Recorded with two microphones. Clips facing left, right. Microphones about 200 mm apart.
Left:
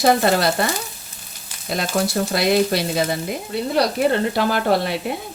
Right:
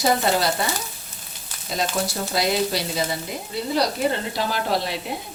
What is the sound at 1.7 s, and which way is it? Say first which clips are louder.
Frying: left 4 dB; 65° left (ahead or behind).